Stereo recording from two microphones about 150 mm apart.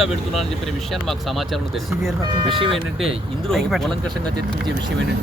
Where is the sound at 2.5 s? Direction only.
35° right (ahead or behind).